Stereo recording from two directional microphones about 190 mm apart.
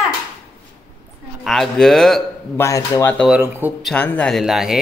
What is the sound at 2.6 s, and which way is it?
Speech, 15° left (ahead or behind).